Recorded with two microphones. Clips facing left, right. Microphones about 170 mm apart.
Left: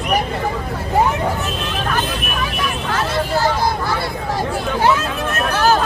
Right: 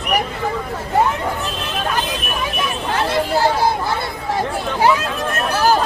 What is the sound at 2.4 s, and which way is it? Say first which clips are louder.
Vehicle: even; 25° right (ahead or behind).